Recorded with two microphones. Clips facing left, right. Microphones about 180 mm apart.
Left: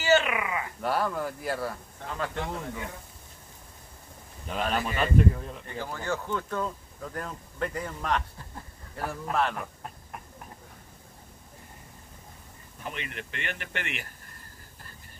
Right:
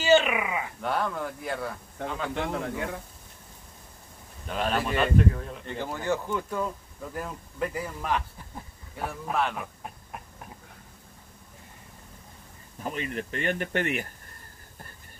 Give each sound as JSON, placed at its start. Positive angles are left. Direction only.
{"t": 0.0, "sound": "speech", "side_deg": -20}
{"t": 0.8, "sound": "speech", "side_deg": 5}
{"t": 4.5, "sound": "speech", "side_deg": 0}
{"t": 5.8, "sound": "speech", "side_deg": -20}
{"t": 12.8, "sound": "speech", "side_deg": -40}